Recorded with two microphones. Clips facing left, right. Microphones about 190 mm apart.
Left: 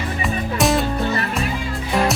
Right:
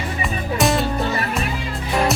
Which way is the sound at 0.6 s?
Centre (ahead or behind).